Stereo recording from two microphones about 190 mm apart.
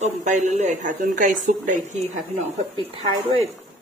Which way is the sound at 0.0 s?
40° right (ahead or behind).